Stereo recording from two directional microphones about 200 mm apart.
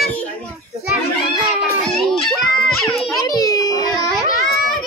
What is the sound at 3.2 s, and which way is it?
Speech, 20° left (ahead or behind).